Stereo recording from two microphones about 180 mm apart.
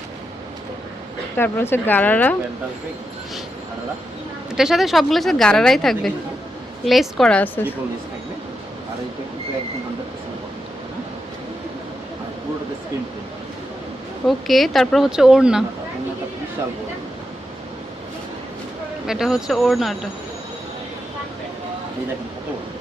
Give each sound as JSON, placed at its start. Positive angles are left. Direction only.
{"t": 1.4, "sound": "speech", "side_deg": 10}
{"t": 4.5, "sound": "a woman's voice", "side_deg": 0}
{"t": 14.3, "sound": "a woman's voice", "side_deg": 0}
{"t": 19.0, "sound": "a woman's voice", "side_deg": -5}